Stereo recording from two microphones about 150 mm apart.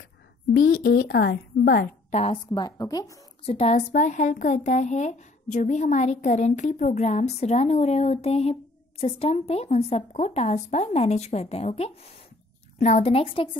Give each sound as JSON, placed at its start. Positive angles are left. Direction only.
{"t": 0.6, "sound": "a woman's voice", "side_deg": 75}
{"t": 2.0, "sound": "a sound", "side_deg": 45}
{"t": 2.3, "sound": "a woman's voice", "side_deg": 30}
{"t": 3.4, "sound": "a woman's voice", "side_deg": 45}